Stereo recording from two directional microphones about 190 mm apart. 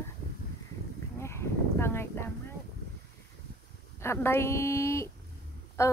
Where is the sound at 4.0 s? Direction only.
15° left (ahead or behind).